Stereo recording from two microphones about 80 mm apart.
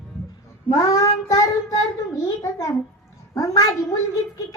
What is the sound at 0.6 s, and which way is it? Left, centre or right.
Child singing, left.